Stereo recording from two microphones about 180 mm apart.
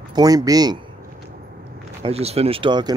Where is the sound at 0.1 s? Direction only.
20° right (ahead or behind).